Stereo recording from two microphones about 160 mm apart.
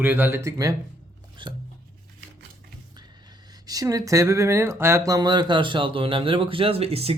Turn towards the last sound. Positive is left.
turn(degrees=-40)  # may be behind; listen again after turning